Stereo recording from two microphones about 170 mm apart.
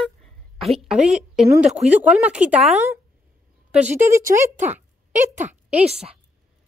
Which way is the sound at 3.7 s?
10° right (ahead or behind).